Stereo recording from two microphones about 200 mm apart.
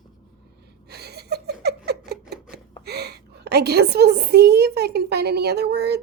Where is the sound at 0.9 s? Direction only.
55° right (ahead or behind).